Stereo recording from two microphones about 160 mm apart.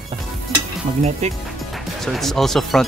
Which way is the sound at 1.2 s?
45° right (ahead or behind).